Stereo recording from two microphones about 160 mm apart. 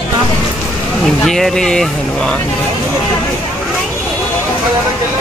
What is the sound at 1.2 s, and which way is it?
Speech, 5° left (ahead or behind).